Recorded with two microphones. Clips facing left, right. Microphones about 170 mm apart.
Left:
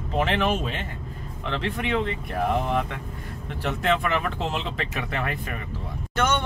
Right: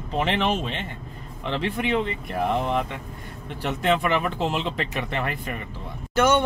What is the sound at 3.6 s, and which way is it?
Speech, centre (ahead or behind).